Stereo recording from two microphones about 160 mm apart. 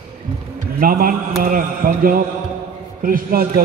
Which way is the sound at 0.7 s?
65° right (ahead or behind).